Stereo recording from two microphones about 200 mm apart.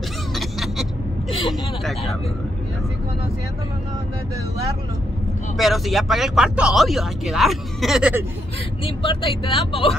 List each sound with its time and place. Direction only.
0.3 s a sound: centre (ahead or behind)
1.5 s vehicle: centre (ahead or behind)
5.6 s speech: centre (ahead or behind)
8.8 s speech: 30° left (ahead or behind)